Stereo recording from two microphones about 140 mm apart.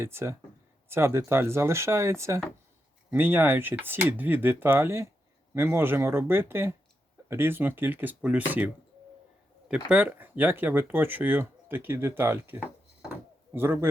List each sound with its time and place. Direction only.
0.0 s a man's voice: 20° right (ahead or behind)